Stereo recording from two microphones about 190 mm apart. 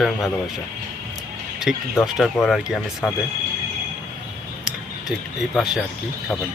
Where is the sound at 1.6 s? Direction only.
Centre (ahead or behind).